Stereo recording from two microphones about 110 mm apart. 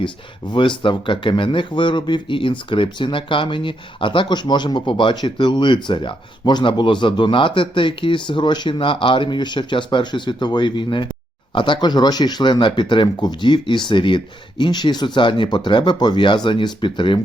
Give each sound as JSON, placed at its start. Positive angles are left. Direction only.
{"t": 0.0, "sound": "speech", "side_deg": 45}